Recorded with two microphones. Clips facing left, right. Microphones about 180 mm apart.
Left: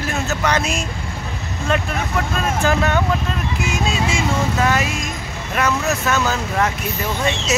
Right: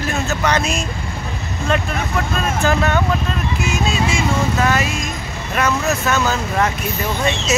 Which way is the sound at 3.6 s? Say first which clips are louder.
Right 1 dB; 15° left (ahead or behind).